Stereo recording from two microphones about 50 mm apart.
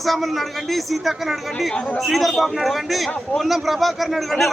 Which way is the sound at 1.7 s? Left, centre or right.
Left.